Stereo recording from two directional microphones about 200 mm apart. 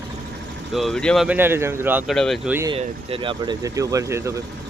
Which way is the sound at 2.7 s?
25° right (ahead or behind).